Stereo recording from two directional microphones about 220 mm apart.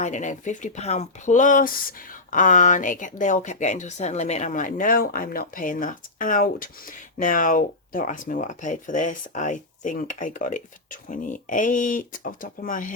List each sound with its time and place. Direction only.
0.0 s speech: 35° left (ahead or behind)